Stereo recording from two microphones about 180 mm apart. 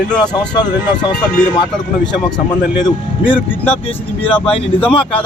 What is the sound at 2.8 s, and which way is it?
Speech, 30° left (ahead or behind).